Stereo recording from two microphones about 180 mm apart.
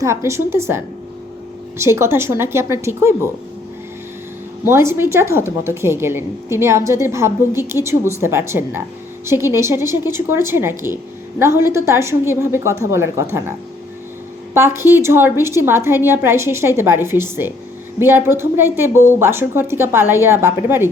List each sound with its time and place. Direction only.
0.0 s a woman's voice: 15° right (ahead or behind)
1.8 s a woman's voice: 15° right (ahead or behind)
4.6 s a woman's voice: 15° right (ahead or behind)
14.5 s a woman's voice: 15° right (ahead or behind)